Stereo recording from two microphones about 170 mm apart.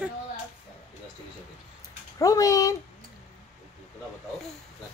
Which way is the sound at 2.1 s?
20° left (ahead or behind).